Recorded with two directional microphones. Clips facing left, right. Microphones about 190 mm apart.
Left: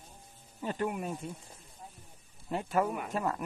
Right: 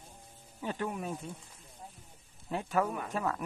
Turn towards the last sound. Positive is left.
turn(degrees=10)  # may be behind; listen again after turning